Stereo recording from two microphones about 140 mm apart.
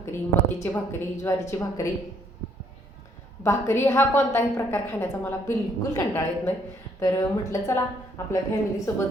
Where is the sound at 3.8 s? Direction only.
20° left (ahead or behind).